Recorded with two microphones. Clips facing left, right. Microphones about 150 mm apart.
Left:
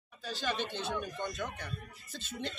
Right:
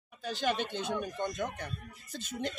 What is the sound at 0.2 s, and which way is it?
Speech, 50° right (ahead or behind).